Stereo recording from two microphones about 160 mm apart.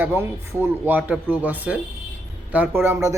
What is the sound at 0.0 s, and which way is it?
Speech, 15° right (ahead or behind).